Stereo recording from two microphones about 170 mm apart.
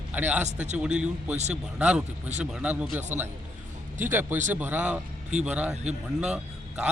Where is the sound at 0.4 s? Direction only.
45° right (ahead or behind).